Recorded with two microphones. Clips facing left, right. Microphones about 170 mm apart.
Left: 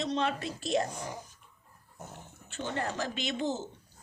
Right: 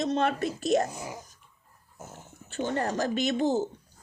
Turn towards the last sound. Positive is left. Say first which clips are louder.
# right 7 dB
turn(degrees=-40)  # may be behind; listen again after turning